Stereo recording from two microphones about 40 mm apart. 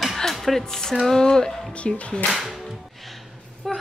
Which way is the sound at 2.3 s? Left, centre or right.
Centre.